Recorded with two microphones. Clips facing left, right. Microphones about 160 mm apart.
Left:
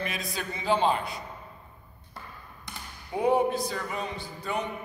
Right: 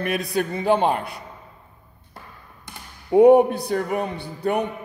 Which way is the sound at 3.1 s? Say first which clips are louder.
Right 11 dB; 60° right (ahead or behind).